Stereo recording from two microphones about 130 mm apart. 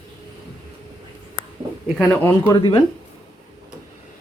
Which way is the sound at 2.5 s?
35° left (ahead or behind).